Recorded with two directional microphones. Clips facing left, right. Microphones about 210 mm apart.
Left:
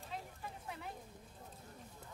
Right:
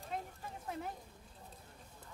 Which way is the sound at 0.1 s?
50° right (ahead or behind).